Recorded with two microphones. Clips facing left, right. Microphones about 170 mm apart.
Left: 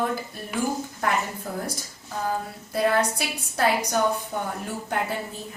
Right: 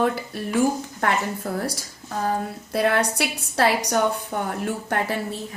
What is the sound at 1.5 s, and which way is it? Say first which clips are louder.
A woman's voice: right 4 dB; 75° right (ahead or behind).